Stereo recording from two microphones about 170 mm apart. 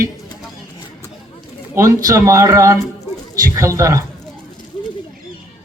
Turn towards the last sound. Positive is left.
turn(degrees=-20)  # may be behind; listen again after turning